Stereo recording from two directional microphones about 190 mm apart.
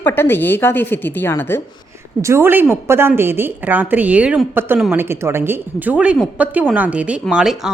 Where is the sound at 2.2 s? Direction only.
15° right (ahead or behind).